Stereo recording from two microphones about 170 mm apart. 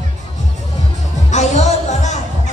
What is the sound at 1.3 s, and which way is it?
Music, 45° left (ahead or behind).